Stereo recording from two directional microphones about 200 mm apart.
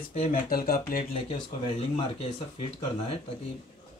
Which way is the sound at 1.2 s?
30° left (ahead or behind).